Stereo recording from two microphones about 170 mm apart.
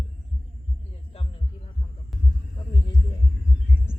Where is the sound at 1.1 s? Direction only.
35° left (ahead or behind).